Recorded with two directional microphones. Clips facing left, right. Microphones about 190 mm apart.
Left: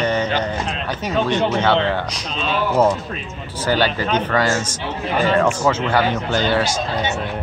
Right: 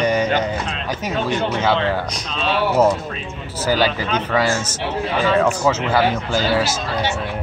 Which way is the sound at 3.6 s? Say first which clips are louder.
Even; 10° right (ahead or behind).